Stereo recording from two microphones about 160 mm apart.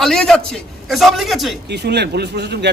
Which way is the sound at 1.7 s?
90° right.